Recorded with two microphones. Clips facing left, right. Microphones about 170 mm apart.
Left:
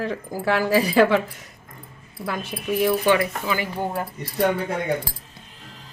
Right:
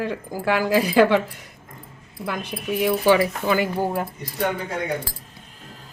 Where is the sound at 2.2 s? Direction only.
5° right (ahead or behind).